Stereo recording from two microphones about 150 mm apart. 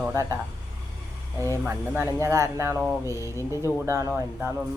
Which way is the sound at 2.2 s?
20° right (ahead or behind).